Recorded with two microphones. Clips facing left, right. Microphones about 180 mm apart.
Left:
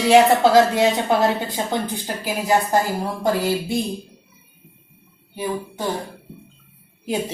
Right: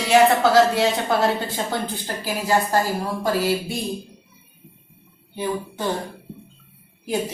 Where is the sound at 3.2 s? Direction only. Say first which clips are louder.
Left 1 dB; 20° left (ahead or behind).